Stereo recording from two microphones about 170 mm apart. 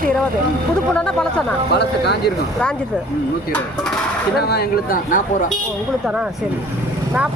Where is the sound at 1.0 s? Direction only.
5° left (ahead or behind).